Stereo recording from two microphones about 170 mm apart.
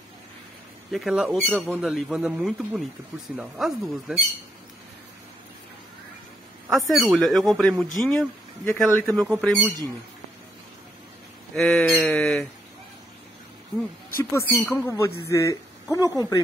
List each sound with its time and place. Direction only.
0.9 s speech: 5° right (ahead or behind)
6.7 s speech: centre (ahead or behind)
11.5 s speech: centre (ahead or behind)
14.3 s speech: 15° left (ahead or behind)